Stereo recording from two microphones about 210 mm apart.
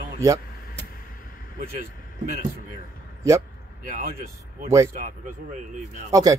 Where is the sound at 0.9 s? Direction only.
40° left (ahead or behind).